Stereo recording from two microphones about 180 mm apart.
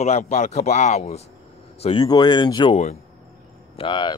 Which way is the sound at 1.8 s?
25° left (ahead or behind).